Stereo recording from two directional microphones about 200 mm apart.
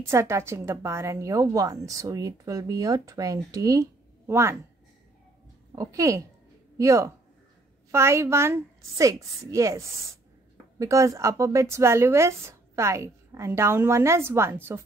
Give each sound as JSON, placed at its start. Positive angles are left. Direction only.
{"t": 0.0, "sound": "a woman's voice", "side_deg": -15}
{"t": 5.8, "sound": "a woman's voice", "side_deg": -15}